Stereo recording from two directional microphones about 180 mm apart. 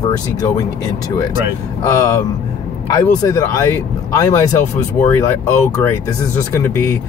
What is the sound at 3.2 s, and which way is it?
Speech, 20° left (ahead or behind).